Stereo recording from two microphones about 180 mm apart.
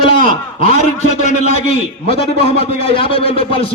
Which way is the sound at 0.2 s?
45° right (ahead or behind).